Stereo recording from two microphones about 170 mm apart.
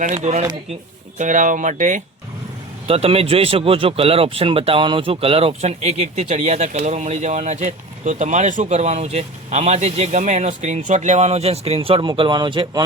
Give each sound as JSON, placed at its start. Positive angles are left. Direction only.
{"t": 0.0, "sound": "speech", "side_deg": -45}
{"t": 2.8, "sound": "speech", "side_deg": -35}